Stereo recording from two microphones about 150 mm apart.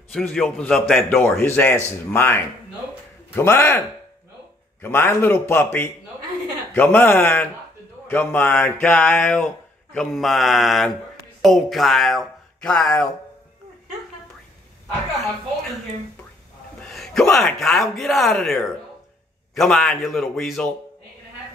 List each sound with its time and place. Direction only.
0.1 s speech: 5° left (ahead or behind)
4.8 s speech: 15° left (ahead or behind)
9.9 s speech: centre (ahead or behind)
16.8 s speech: centre (ahead or behind)